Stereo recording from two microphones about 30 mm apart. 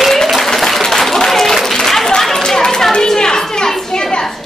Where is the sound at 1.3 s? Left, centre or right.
Centre.